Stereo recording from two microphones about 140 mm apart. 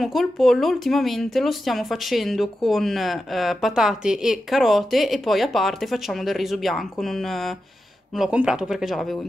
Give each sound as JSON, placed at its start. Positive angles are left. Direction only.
{"t": 0.0, "sound": "a woman's voice", "side_deg": 0}